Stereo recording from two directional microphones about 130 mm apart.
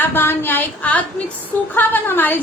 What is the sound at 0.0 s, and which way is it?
A woman's voice, 15° left (ahead or behind).